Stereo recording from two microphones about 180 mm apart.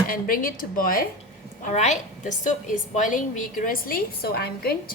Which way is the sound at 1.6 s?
40° left (ahead or behind).